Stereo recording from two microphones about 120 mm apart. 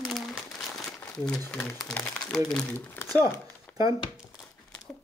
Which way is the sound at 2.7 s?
20° left (ahead or behind).